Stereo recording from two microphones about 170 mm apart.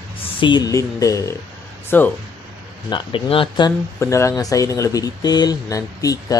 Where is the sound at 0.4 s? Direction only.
25° left (ahead or behind).